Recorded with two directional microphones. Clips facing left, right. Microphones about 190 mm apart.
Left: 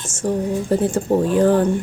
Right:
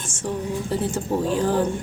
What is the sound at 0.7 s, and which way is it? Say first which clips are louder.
Speech: left 7 dB; 50° left (ahead or behind).